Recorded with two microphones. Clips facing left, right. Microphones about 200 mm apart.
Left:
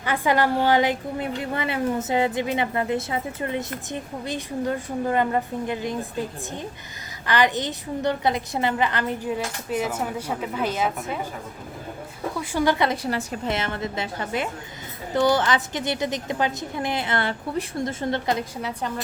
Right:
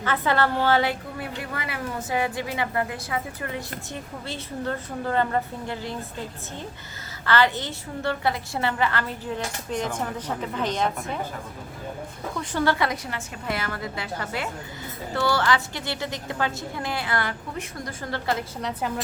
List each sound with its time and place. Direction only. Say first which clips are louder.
0.0 s a woman's voice: left 2 dB; 15° left (ahead or behind)
7.3 s a woman's voice: left 1 dB; 15° left (ahead or behind)
9.6 s a woman's voice: left 2 dB; 5° left (ahead or behind)
12.4 s a woman's voice: left 2 dB; 15° left (ahead or behind)
12.9 s a woman's voice: left 6 dB; 30° left (ahead or behind)